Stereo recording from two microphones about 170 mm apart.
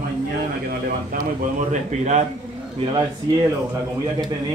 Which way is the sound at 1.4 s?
45° right (ahead or behind).